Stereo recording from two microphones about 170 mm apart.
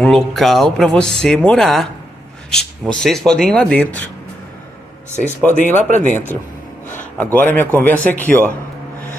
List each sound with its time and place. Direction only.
0.0 s speech: centre (ahead or behind)
2.9 s speech: 5° left (ahead or behind)
5.4 s a man's voice: 10° left (ahead or behind)
5.8 s speech: 45° right (ahead or behind)
6.9 s a man's voice: 10° left (ahead or behind)